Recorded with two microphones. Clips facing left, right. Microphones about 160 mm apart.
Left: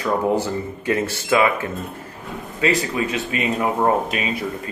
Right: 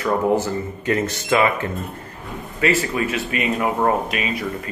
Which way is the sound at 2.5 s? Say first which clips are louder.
Even; 20° left (ahead or behind).